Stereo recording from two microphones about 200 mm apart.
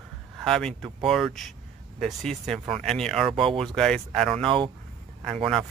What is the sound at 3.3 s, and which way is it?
Speech, 25° right (ahead or behind).